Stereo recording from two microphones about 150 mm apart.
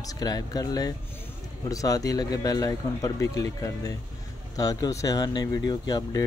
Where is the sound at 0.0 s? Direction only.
25° left (ahead or behind).